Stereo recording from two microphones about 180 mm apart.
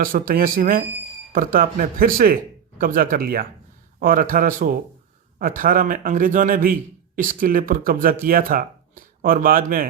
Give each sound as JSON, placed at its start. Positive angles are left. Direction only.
{"t": 0.0, "sound": "speech", "side_deg": -50}